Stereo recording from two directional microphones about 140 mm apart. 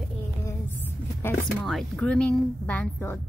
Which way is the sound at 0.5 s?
15° left (ahead or behind).